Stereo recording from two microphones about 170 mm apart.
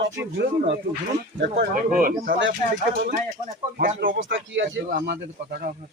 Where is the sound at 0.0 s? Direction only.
85° right.